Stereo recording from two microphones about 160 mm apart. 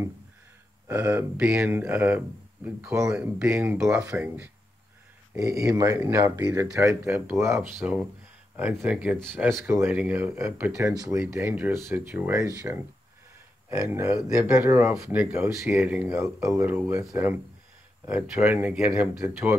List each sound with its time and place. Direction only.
0.8 s speech: 15° right (ahead or behind)
5.4 s speech: 20° right (ahead or behind)
13.7 s speech: 15° right (ahead or behind)
18.0 s speech: 10° right (ahead or behind)